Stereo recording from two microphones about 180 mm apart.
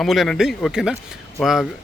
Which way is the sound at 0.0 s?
Centre (ahead or behind).